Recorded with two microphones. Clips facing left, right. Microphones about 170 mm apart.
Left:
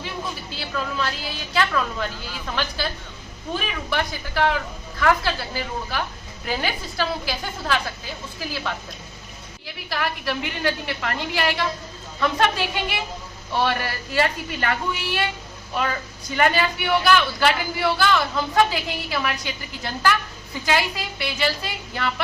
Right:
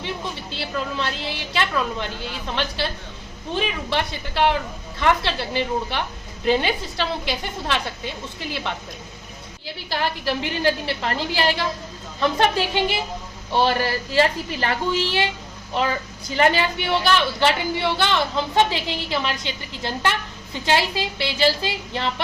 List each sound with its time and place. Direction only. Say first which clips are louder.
0.5 s a woman's voice: right 1 dB; 25° right (ahead or behind)
16.3 s speech: right 1 dB; 30° right (ahead or behind)